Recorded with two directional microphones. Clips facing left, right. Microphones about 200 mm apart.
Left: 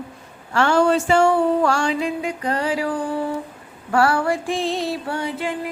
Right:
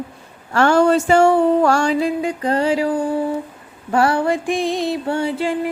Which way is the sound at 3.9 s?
20° right (ahead or behind).